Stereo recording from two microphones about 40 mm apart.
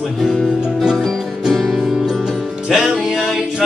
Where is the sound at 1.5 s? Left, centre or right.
Centre.